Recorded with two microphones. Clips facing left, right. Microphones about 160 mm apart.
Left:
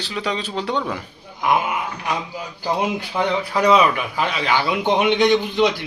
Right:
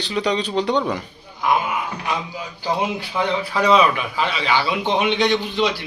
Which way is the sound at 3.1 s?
10° left (ahead or behind).